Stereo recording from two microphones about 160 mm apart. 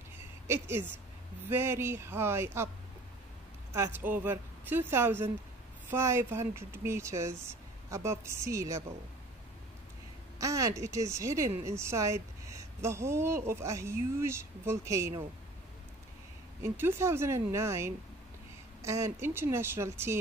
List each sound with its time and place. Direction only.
1.5 s speech: 15° right (ahead or behind)
3.7 s speech: 15° right (ahead or behind)
10.4 s speech: 20° right (ahead or behind)
16.6 s speech: 15° right (ahead or behind)